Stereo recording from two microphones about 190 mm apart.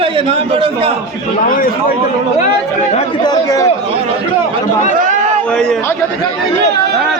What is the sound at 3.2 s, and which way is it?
Speech, 20° left (ahead or behind).